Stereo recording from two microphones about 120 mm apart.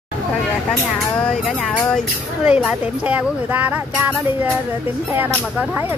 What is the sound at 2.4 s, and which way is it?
Speech, 10° right (ahead or behind).